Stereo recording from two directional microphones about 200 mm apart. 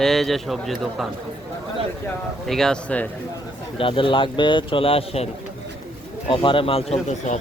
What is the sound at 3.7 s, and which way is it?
A man's voice, 25° left (ahead or behind).